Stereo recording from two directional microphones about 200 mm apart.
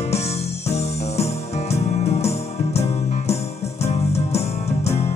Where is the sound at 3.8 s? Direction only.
30° left (ahead or behind).